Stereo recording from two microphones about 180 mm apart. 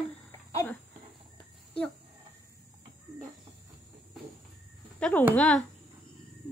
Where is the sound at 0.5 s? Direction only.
20° left (ahead or behind).